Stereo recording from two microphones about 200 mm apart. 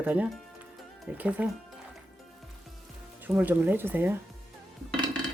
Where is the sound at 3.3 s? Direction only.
10° right (ahead or behind).